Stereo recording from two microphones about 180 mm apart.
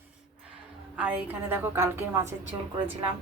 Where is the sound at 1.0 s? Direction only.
5° right (ahead or behind).